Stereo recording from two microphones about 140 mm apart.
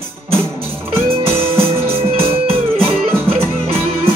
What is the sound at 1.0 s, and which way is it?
Music, 45° right (ahead or behind).